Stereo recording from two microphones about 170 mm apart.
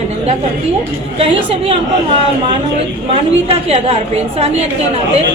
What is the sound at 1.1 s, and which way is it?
Speech, 35° right (ahead or behind).